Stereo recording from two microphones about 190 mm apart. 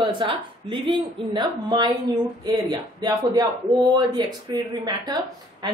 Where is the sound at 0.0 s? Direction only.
25° right (ahead or behind).